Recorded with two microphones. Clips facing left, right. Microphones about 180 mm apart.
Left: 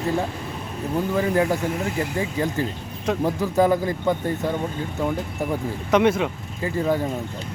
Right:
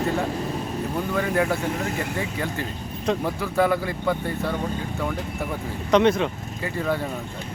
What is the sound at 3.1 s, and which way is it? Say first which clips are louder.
A woman's voice: left 2 dB; 15° left (ahead or behind).